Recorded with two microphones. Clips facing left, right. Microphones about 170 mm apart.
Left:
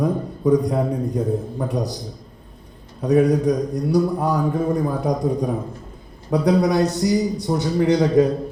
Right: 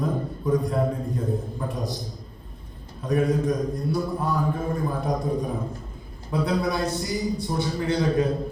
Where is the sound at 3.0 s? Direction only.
70° left (ahead or behind).